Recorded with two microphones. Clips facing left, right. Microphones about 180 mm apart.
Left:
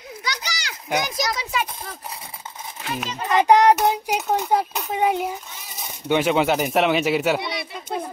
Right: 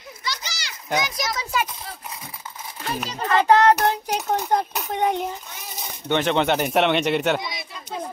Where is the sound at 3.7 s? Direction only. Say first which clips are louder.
Left 1 dB; 5° left (ahead or behind).